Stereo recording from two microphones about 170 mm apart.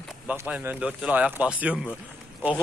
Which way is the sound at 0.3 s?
10° right (ahead or behind).